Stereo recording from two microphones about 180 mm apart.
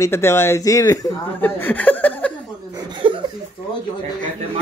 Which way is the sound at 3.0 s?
30° right (ahead or behind).